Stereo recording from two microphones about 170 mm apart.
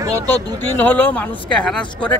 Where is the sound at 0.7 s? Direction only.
10° left (ahead or behind).